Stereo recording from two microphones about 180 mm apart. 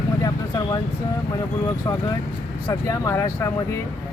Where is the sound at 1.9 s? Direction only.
20° left (ahead or behind).